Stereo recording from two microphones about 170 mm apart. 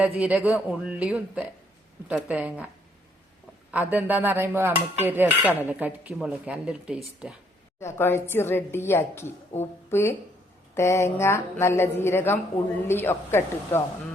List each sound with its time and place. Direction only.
0.2 s speech: 10° right (ahead or behind)
3.7 s speech: 10° right (ahead or behind)
7.8 s a woman's voice: 15° left (ahead or behind)